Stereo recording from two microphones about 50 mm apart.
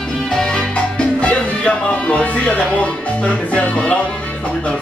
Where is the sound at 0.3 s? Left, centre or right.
Centre.